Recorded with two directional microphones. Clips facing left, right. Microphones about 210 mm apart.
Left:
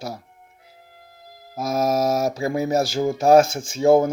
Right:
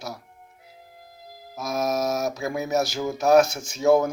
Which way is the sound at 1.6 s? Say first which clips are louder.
Left 4 dB; 30° left (ahead or behind).